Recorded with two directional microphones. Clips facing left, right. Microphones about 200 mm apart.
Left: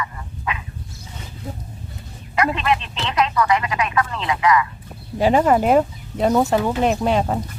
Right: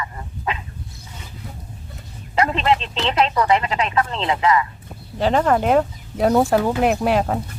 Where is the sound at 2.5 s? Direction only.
30° right (ahead or behind).